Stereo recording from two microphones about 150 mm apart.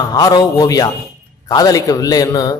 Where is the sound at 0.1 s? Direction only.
25° left (ahead or behind).